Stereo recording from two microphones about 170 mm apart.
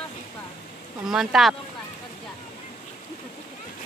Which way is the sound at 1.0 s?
Centre (ahead or behind).